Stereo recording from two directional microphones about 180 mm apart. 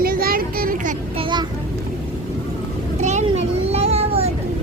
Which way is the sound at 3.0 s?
40° right (ahead or behind).